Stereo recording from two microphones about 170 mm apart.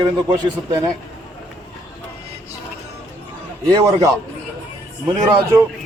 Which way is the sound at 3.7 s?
20° right (ahead or behind).